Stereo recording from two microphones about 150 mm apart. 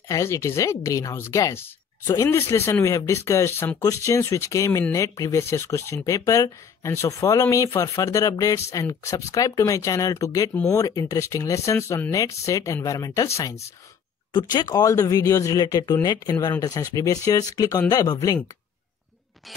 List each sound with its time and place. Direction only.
0.1 s speech: 20° left (ahead or behind)